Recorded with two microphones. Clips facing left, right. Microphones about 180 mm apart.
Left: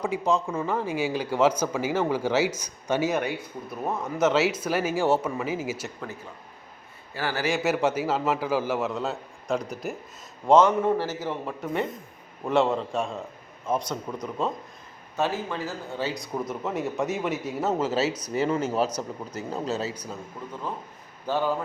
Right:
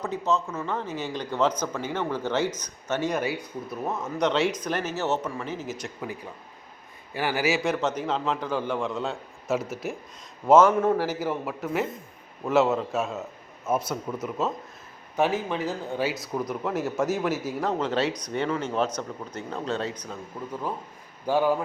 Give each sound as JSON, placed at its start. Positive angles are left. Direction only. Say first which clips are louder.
{"t": 0.0, "sound": "speech", "louder": "left 2 dB", "side_deg": 10}
{"t": 7.1, "sound": "speech", "louder": "right 2 dB", "side_deg": -15}
{"t": 7.5, "sound": "a man's voice", "louder": "left 2 dB", "side_deg": 5}
{"t": 15.1, "sound": "speech", "louder": "right 3 dB", "side_deg": -15}
{"t": 16.1, "sound": "a man's voice", "louder": "right 1 dB", "side_deg": 0}
{"t": 21.2, "sound": "speech", "louder": "right 3 dB", "side_deg": -10}